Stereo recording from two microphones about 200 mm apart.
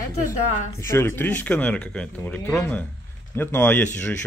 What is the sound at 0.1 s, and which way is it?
Speech, 40° left (ahead or behind).